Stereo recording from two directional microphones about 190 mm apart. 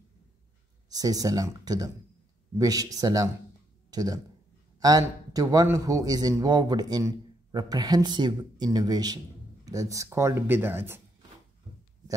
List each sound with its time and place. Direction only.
0.8 s a man's voice: 20° right (ahead or behind)